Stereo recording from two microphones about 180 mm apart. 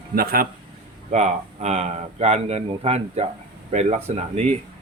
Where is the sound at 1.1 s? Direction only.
40° right (ahead or behind).